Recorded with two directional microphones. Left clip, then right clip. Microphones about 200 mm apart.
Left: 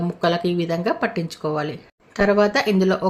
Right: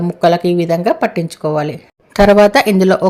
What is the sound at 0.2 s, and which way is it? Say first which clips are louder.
Speech: right 9 dB; 30° right (ahead or behind).